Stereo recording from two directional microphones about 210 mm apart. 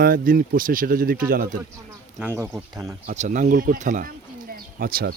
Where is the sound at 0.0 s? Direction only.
45° right (ahead or behind).